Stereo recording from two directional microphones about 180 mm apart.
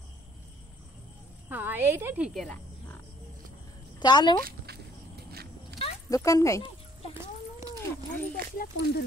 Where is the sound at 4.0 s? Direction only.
25° left (ahead or behind).